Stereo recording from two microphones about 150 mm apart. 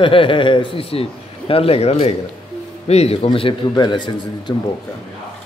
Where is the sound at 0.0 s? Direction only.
35° left (ahead or behind).